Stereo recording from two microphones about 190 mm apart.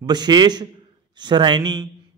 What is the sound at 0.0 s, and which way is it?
A man's voice, 20° right (ahead or behind).